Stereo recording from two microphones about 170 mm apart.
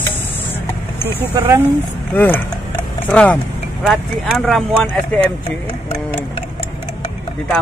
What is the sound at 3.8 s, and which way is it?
Speech, 5° right (ahead or behind).